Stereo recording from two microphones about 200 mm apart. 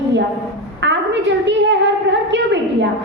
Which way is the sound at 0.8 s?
60° right (ahead or behind).